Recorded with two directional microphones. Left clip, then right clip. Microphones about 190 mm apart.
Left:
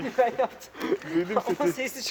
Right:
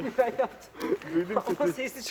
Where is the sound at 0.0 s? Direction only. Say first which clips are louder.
Left 2 dB; 55° left (ahead or behind).